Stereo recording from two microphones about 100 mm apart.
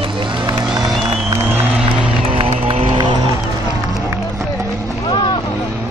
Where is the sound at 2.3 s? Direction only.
80° right.